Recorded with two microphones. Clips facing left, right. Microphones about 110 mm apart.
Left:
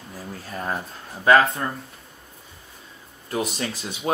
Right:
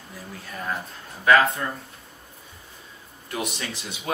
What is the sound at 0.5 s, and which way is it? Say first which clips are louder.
Speech: left 2 dB; 30° left (ahead or behind).